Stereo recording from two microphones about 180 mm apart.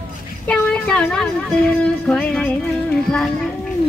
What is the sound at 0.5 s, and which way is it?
Speech, 5° left (ahead or behind).